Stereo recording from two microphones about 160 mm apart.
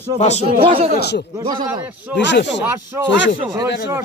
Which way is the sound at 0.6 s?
35° right (ahead or behind).